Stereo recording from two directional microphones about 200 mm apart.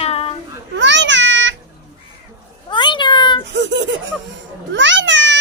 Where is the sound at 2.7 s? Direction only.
25° left (ahead or behind).